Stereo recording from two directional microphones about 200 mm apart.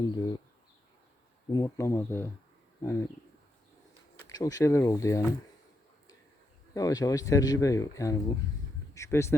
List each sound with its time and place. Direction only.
1.5 s speech: 20° left (ahead or behind)
4.3 s speech: 20° left (ahead or behind)
6.7 s speech: 15° left (ahead or behind)